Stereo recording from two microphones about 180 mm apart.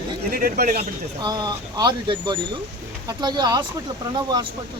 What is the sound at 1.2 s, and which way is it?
Speech, 20° right (ahead or behind).